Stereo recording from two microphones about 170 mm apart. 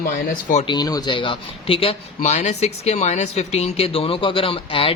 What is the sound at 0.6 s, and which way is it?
Speech, 25° left (ahead or behind).